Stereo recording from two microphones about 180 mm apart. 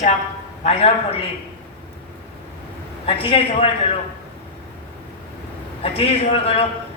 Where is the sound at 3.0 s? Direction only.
30° left (ahead or behind).